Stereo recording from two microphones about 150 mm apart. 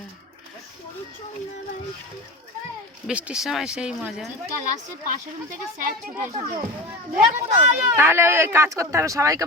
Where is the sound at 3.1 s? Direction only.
10° right (ahead or behind).